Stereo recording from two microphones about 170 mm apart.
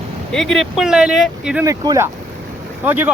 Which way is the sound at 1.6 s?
20° right (ahead or behind).